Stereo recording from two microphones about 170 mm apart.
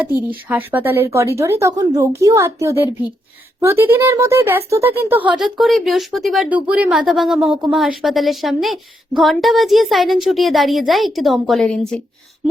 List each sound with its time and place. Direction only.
0.4 s speech: 10° right (ahead or behind)
5.4 s speech: centre (ahead or behind)